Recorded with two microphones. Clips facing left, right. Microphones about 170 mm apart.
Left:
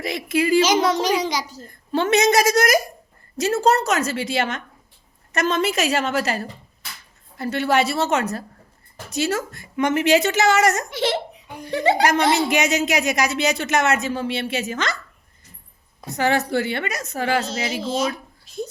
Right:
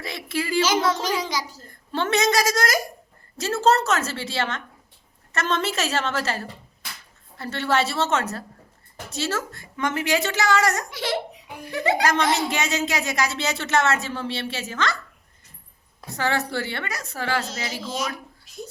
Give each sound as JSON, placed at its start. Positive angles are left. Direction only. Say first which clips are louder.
{"t": 0.0, "sound": "a child's voice", "louder": "left 7 dB", "side_deg": 20}
{"t": 12.5, "sound": "speech", "louder": "left 5 dB", "side_deg": 20}
{"t": 16.0, "sound": "a child's voice", "louder": "left 5 dB", "side_deg": 20}